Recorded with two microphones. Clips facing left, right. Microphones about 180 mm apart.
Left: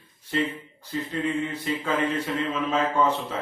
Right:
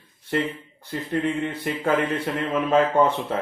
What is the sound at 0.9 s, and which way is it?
A man's voice, 60° right (ahead or behind).